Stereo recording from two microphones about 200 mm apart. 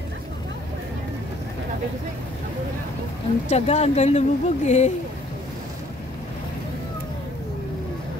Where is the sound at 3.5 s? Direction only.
35° left (ahead or behind).